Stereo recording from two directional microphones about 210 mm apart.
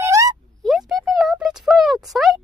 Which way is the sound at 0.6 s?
Centre (ahead or behind).